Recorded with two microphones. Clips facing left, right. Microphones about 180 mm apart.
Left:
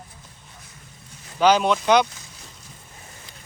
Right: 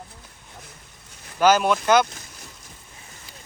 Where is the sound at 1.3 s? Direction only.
5° right (ahead or behind).